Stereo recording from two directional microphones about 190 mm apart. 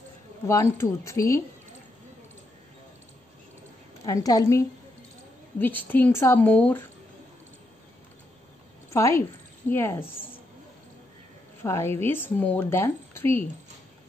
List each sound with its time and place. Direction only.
0.5 s speech: 15° left (ahead or behind)
4.0 s speech: 20° left (ahead or behind)
8.9 s speech: 15° left (ahead or behind)
11.6 s a woman's voice: 15° left (ahead or behind)